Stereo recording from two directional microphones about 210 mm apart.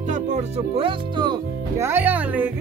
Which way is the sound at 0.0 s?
35° right (ahead or behind).